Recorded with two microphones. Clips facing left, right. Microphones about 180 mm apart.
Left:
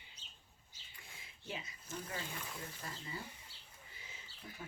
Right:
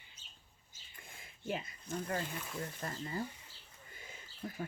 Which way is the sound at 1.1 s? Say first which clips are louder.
Right 8 dB; 50° right (ahead or behind).